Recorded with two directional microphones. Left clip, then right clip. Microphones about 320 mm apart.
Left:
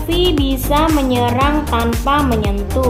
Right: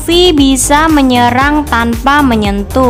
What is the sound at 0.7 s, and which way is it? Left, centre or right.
Speech, right.